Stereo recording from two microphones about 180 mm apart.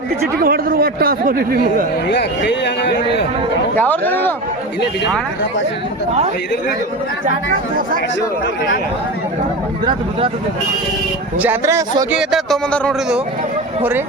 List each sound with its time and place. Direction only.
0.3 s speech: 55° right (ahead or behind)
2.0 s speech: 75° left (ahead or behind)
3.8 s speech: 10° left (ahead or behind)
11.3 s speech: 10° right (ahead or behind)
12.1 s speech: centre (ahead or behind)